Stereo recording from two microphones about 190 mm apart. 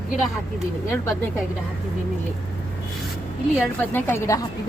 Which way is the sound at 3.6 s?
10° left (ahead or behind).